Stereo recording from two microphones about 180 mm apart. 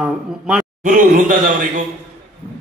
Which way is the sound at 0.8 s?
45° right (ahead or behind).